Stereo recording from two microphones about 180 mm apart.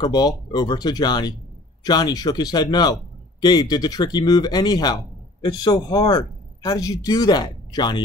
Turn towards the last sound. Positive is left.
turn(degrees=25)  # may be behind; listen again after turning